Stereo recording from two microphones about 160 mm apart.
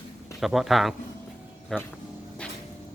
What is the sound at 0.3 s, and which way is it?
Speech, centre (ahead or behind).